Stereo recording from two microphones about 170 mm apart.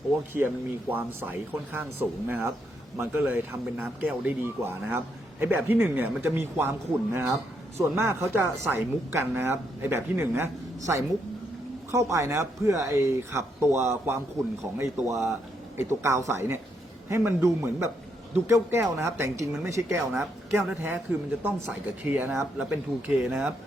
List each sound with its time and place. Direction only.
0.3 s speech: 10° right (ahead or behind)